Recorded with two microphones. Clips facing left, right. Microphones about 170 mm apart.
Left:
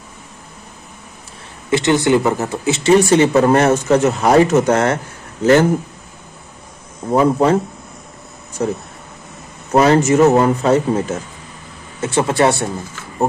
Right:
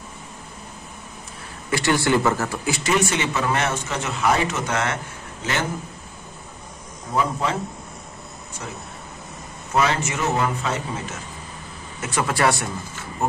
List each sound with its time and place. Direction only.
1.7 s speech: 20° left (ahead or behind); by 5.7 s 40° left (ahead or behind)
7.1 s a man's voice: 45° left (ahead or behind)
8.6 s a man's voice: 40° left (ahead or behind)
12.0 s speech: 25° left (ahead or behind)